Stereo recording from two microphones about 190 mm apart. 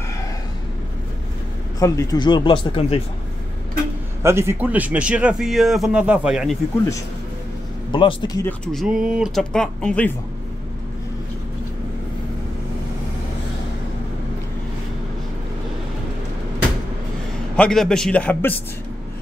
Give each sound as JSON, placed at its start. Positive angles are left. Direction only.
{"t": 1.8, "sound": "speech", "side_deg": 20}
{"t": 4.2, "sound": "a man's voice", "side_deg": -15}
{"t": 7.9, "sound": "speech", "side_deg": 25}
{"t": 8.5, "sound": "speech", "side_deg": 0}
{"t": 17.6, "sound": "speech", "side_deg": 5}